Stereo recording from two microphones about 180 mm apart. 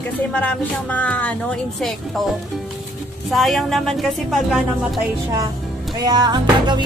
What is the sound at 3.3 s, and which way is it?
Speech, centre (ahead or behind).